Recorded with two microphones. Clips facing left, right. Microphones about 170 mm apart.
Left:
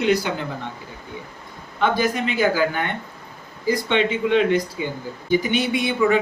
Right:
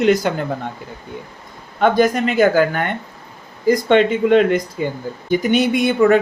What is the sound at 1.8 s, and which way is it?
A man's voice, 50° right (ahead or behind).